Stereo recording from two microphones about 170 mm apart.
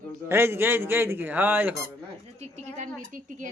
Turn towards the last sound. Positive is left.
turn(degrees=-50)  # may be behind; listen again after turning